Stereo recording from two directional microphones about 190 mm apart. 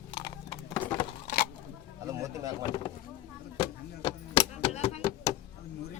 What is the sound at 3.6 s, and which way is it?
Chop, 30° left (ahead or behind).